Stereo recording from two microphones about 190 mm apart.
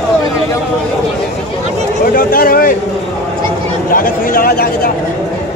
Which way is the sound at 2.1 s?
50° left (ahead or behind).